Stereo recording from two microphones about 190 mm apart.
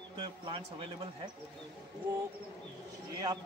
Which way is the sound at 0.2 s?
30° right (ahead or behind).